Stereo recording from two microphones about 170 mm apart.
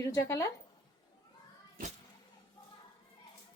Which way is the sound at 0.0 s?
20° left (ahead or behind).